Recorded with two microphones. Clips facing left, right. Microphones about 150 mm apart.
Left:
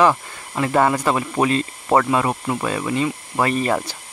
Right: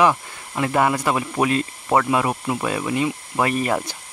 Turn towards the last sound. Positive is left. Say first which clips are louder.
# left 1 dB
turn(degrees=-10)  # may be behind; listen again after turning